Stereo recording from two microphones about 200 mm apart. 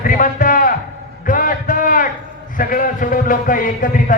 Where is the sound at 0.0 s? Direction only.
40° left (ahead or behind).